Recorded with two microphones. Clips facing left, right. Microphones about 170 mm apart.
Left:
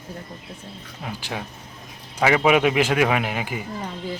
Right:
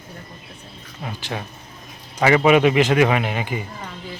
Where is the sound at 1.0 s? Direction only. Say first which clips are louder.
Right 2 dB; 5° left (ahead or behind).